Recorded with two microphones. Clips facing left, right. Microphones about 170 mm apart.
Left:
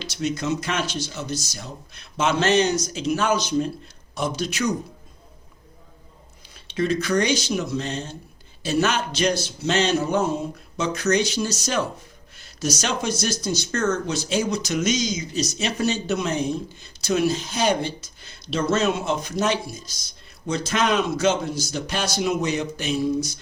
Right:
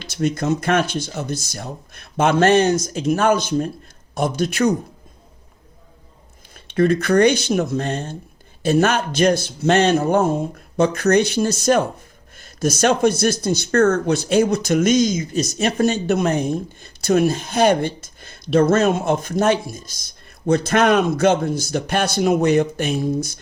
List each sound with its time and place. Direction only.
0.0 s speech: 50° right (ahead or behind)
6.7 s a man's voice: 55° right (ahead or behind)